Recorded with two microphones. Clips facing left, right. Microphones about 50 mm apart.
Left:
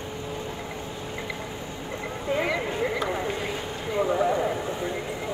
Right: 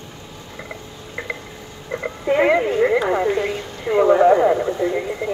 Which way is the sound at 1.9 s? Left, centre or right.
Right.